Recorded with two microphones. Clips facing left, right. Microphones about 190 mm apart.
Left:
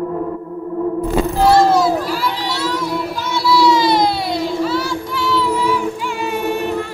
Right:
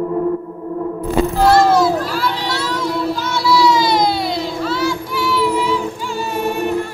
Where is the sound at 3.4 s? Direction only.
Centre (ahead or behind).